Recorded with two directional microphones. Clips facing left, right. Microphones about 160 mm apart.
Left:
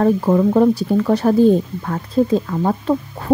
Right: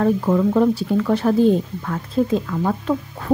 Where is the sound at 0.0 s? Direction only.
35° left (ahead or behind).